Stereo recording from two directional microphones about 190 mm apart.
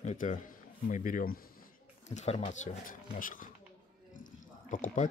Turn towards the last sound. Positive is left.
turn(degrees=40)  # may be behind; listen again after turning